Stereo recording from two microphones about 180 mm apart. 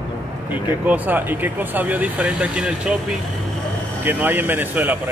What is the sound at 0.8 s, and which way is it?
Speech, 10° right (ahead or behind).